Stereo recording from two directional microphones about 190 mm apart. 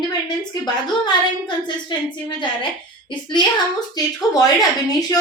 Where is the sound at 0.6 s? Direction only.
25° left (ahead or behind).